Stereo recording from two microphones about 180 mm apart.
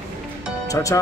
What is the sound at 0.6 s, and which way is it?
Speech, 20° left (ahead or behind).